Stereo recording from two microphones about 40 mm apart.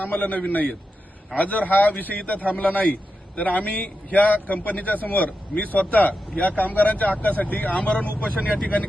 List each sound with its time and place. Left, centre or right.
0.0 s a man's voice: left
7.8 s a man's voice: left